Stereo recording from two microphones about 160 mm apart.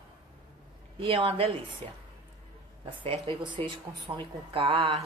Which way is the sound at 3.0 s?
35° right (ahead or behind).